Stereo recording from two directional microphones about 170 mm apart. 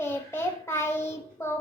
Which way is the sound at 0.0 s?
15° left (ahead or behind).